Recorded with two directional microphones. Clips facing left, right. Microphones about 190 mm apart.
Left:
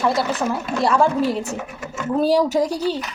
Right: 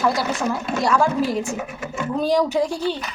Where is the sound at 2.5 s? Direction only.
40° left (ahead or behind).